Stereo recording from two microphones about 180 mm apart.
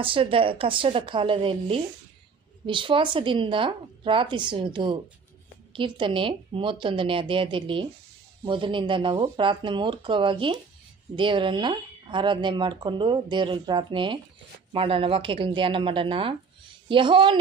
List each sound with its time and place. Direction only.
0.0 s speech: 30° right (ahead or behind)